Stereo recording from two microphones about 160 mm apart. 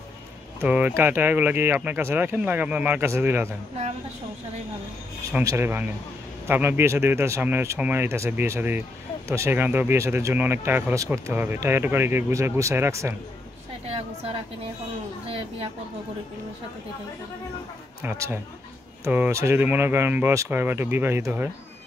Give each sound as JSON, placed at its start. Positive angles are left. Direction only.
{"t": 0.6, "sound": "speech", "side_deg": -10}
{"t": 5.4, "sound": "speech", "side_deg": -20}
{"t": 15.2, "sound": "speech", "side_deg": -35}
{"t": 18.0, "sound": "speech", "side_deg": -15}